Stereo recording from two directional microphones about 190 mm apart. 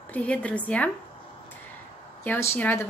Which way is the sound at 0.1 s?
5° left (ahead or behind).